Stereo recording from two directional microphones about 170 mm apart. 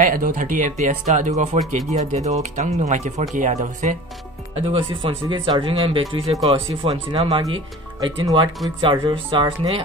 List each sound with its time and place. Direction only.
0.0 s speech: 55° right (ahead or behind)
4.6 s speech: 30° right (ahead or behind)